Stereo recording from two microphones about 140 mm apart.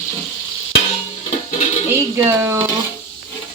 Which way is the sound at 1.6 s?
55° left (ahead or behind).